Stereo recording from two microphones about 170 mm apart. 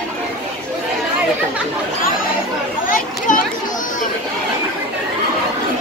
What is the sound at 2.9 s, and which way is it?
Speech, 55° left (ahead or behind).